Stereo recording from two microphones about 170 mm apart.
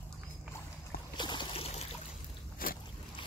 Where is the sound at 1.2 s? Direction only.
25° left (ahead or behind).